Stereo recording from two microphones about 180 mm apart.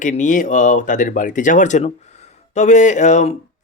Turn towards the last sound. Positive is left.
turn(degrees=40)  # may be behind; listen again after turning